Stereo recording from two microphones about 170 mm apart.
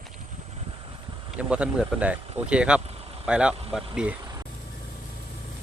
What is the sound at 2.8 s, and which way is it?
Vehicle, 35° right (ahead or behind).